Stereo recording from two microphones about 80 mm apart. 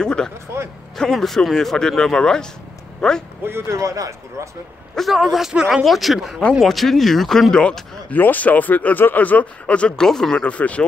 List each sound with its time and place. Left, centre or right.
0.0 s vehicle: centre
0.9 s a man's voice: centre
3.4 s speech: right
4.9 s speech: centre
8.1 s speech: left